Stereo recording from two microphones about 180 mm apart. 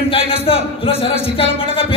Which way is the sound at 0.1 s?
30° left (ahead or behind).